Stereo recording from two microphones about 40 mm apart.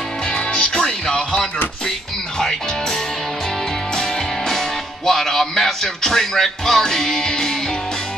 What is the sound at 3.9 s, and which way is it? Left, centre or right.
Music, centre.